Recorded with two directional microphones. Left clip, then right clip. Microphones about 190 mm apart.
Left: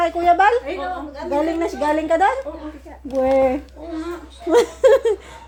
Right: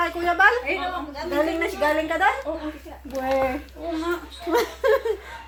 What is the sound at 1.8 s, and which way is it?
Speech, 65° left (ahead or behind).